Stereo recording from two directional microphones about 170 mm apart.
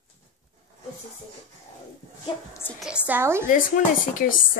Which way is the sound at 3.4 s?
50° left (ahead or behind).